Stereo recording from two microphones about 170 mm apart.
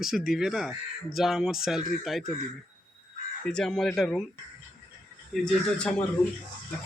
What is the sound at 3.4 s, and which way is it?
Speech, 5° left (ahead or behind).